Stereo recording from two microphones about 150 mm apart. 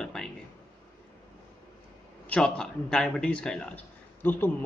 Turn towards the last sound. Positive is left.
turn(degrees=15)  # may be behind; listen again after turning